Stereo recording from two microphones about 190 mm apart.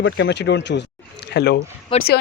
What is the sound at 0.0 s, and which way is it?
Speech, 65° left (ahead or behind).